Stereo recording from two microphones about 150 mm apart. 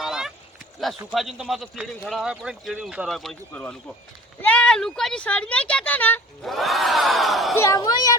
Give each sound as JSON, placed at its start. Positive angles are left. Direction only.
{"t": 0.0, "sound": "a sound", "side_deg": -5}
{"t": 1.1, "sound": "a man's voice", "side_deg": 0}
{"t": 6.4, "sound": "a man's voice", "side_deg": 0}
{"t": 7.5, "sound": "a woman's voice", "side_deg": 20}